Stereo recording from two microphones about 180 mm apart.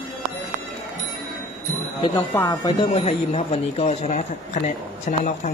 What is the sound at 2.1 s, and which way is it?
Speech, 20° left (ahead or behind).